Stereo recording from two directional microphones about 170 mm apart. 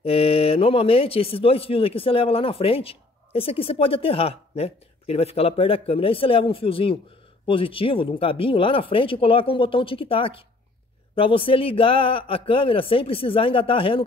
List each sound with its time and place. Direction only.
0.0 s speech: 35° left (ahead or behind)